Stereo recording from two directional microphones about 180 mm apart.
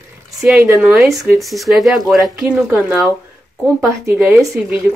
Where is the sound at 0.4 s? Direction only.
Centre (ahead or behind).